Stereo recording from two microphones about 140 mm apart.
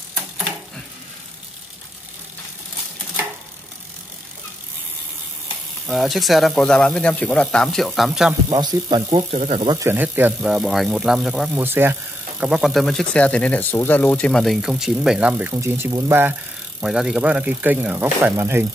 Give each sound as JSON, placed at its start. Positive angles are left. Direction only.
{"t": 5.9, "sound": "speech", "side_deg": 0}
{"t": 8.5, "sound": "speech", "side_deg": -30}
{"t": 8.8, "sound": "speech", "side_deg": -40}
{"t": 9.7, "sound": "speech", "side_deg": -20}
{"t": 11.5, "sound": "speech", "side_deg": -15}
{"t": 15.5, "sound": "speech", "side_deg": -25}
{"t": 16.8, "sound": "speech", "side_deg": -5}